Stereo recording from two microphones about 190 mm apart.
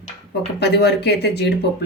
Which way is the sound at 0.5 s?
65° left (ahead or behind).